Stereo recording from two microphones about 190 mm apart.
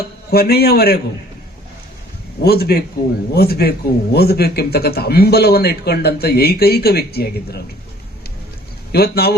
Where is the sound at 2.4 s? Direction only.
55° left (ahead or behind).